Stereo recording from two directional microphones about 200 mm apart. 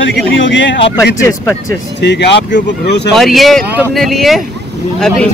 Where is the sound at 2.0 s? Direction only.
60° left (ahead or behind).